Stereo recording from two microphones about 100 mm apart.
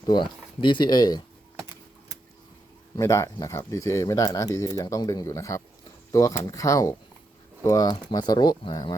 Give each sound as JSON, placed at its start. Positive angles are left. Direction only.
{"t": 0.0, "sound": "speech", "side_deg": 50}
{"t": 3.0, "sound": "speech", "side_deg": 30}